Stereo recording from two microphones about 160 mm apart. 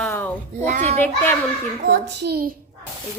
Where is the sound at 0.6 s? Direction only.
45° right (ahead or behind).